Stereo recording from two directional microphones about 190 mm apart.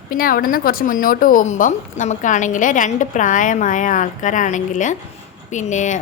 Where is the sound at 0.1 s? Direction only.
50° left (ahead or behind).